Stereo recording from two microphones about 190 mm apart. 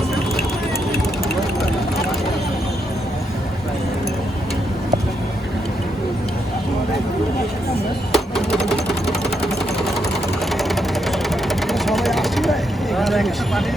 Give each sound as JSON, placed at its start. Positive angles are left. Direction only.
{"t": 8.1, "sound": "a sound", "side_deg": 0}
{"t": 10.6, "sound": "ratchet", "side_deg": 0}
{"t": 11.4, "sound": "vehicle", "side_deg": 0}